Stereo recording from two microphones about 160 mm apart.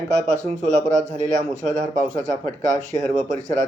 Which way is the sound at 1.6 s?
50° right (ahead or behind).